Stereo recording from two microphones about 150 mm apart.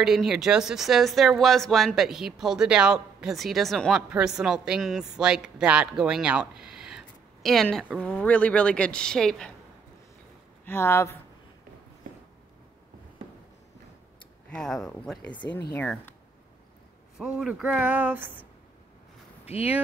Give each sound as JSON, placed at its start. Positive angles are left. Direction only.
{"t": 0.0, "sound": "speech", "side_deg": 0}
{"t": 10.6, "sound": "speech", "side_deg": 15}
{"t": 14.5, "sound": "speech", "side_deg": 5}
{"t": 17.2, "sound": "speech", "side_deg": -5}
{"t": 19.4, "sound": "speech", "side_deg": 40}